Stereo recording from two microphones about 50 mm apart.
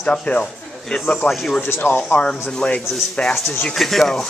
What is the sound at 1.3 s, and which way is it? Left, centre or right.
Speech, centre.